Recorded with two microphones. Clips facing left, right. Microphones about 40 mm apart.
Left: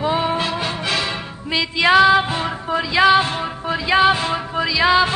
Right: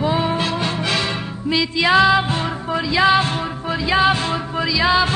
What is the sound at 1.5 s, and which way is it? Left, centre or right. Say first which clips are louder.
Music: even; centre.